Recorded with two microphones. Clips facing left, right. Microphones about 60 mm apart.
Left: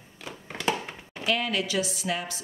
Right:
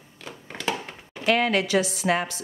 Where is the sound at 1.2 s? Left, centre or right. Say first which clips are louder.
Right 6 dB; right.